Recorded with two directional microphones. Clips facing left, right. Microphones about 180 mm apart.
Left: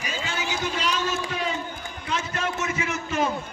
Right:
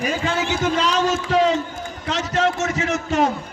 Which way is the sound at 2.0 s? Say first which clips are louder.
Right 8 dB; 80° right.